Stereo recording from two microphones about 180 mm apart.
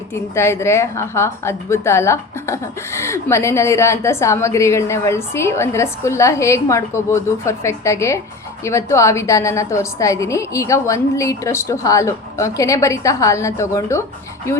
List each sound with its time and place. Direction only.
0.1 s a woman's voice: 15° left (ahead or behind)